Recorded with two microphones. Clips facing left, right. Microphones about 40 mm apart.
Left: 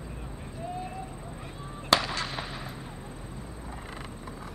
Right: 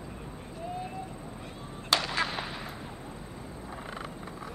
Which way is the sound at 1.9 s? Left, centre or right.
Centre.